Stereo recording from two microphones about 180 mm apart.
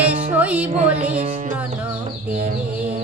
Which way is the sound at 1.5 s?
10° right (ahead or behind).